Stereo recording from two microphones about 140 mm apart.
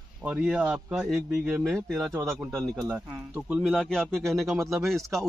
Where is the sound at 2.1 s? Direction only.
20° right (ahead or behind).